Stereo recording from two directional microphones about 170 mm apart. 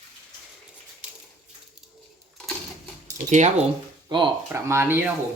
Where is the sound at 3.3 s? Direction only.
45° right (ahead or behind).